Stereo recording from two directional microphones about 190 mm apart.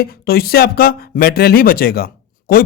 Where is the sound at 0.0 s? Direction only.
55° left (ahead or behind).